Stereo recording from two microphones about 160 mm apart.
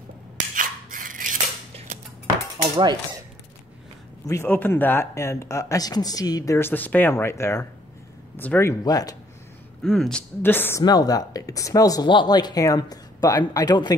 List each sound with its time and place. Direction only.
0.6 s scissors: 55° right (ahead or behind)
2.7 s cutlery: 25° right (ahead or behind)
4.3 s speech: 15° left (ahead or behind)
9.8 s speech: 5° left (ahead or behind)
10.8 s speech: 25° left (ahead or behind)